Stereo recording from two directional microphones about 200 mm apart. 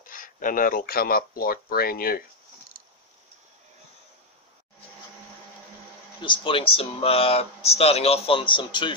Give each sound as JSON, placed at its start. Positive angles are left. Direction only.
{"t": 0.0, "sound": "speech", "side_deg": 45}
{"t": 6.2, "sound": "speech", "side_deg": 25}